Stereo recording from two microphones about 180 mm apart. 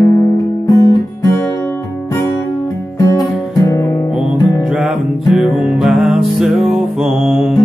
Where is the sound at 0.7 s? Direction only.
20° left (ahead or behind).